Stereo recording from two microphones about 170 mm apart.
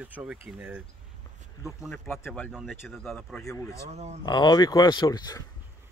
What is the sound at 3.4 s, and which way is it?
Speech, 15° left (ahead or behind).